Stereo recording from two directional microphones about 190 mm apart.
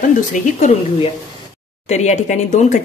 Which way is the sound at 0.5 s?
40° left (ahead or behind).